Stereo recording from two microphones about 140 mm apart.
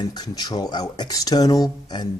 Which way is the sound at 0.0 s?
30° left (ahead or behind).